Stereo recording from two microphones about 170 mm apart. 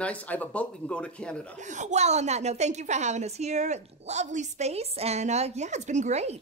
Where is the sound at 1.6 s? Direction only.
45° right (ahead or behind).